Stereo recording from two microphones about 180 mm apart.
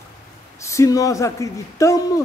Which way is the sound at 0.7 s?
20° left (ahead or behind).